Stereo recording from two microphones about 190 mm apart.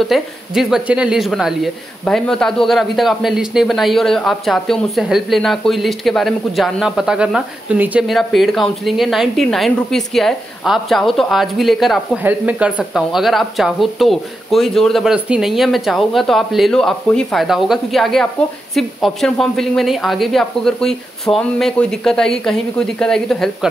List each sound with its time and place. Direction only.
0.0 s speech: centre (ahead or behind)